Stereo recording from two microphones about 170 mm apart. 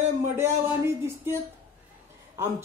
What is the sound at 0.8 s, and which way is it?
Speech, 15° right (ahead or behind).